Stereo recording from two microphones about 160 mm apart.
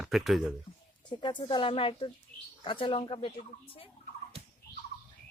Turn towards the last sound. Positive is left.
turn(degrees=35)  # may be behind; listen again after turning